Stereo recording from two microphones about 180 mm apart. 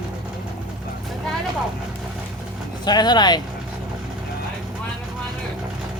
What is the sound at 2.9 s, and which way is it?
Speech, 25° left (ahead or behind).